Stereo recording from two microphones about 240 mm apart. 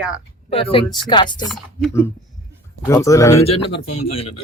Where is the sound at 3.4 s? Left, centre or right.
Left.